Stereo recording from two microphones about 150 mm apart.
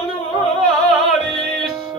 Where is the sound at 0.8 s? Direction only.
Centre (ahead or behind).